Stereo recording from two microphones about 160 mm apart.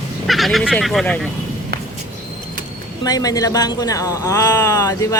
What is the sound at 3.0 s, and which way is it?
A man's voice, 25° left (ahead or behind).